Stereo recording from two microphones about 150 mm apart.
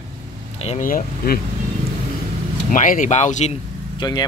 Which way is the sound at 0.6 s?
45° left (ahead or behind).